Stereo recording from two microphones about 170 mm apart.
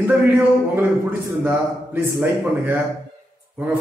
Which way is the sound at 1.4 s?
10° right (ahead or behind).